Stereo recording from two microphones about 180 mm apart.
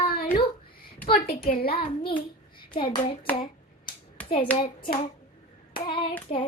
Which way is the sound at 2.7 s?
30° left (ahead or behind).